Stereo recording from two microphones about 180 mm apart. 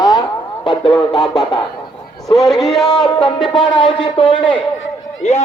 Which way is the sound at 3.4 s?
25° left (ahead or behind).